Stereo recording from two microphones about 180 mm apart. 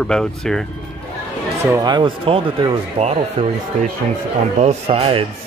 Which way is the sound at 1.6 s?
20° right (ahead or behind).